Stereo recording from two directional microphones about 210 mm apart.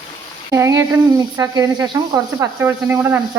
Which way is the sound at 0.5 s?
15° right (ahead or behind).